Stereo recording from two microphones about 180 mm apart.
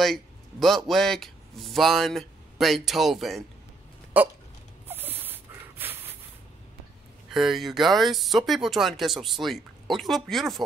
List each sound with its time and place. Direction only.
0.0 s speech: centre (ahead or behind)
4.1 s hiccup: 10° right (ahead or behind)
4.8 s a sound: 10° right (ahead or behind)
7.2 s speech: centre (ahead or behind)